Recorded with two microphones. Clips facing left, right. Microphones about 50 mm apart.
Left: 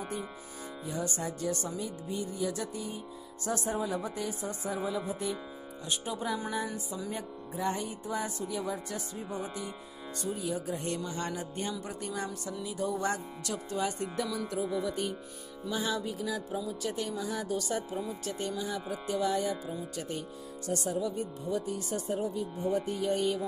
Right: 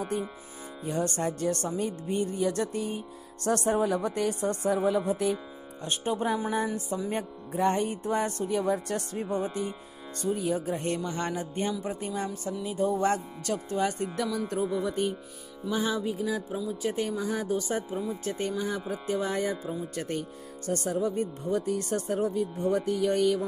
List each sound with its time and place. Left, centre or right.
0.8 s speech: right
5.9 s music: right
6.5 s speech: right
10.2 s music: right
11.8 s speech: right
12.6 s music: right
15.9 s music: centre
16.8 s speech: right
18.9 s music: right
20.0 s speech: right